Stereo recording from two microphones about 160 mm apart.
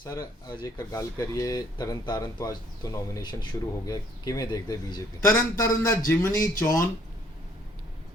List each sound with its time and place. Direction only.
0.0 s speech: 25° left (ahead or behind)